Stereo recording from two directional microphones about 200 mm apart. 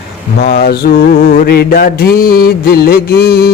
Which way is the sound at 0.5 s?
50° left (ahead or behind).